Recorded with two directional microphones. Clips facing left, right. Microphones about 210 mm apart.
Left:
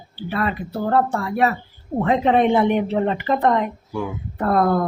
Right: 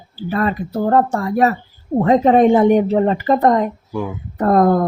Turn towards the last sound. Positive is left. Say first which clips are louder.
# right 5 dB
turn(degrees=-40)  # may be behind; listen again after turning